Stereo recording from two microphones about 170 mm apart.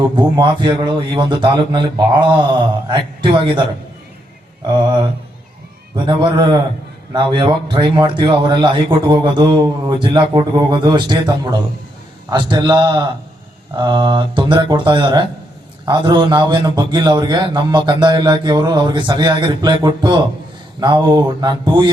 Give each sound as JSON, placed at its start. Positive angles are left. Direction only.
{"t": 0.2, "sound": "a man's voice", "side_deg": -25}
{"t": 6.1, "sound": "a man's voice", "side_deg": -30}